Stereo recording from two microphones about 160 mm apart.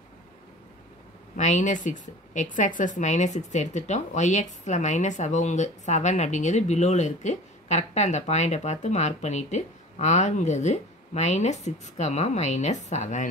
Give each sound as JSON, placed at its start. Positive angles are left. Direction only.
{"t": 1.3, "sound": "a woman's voice", "side_deg": 50}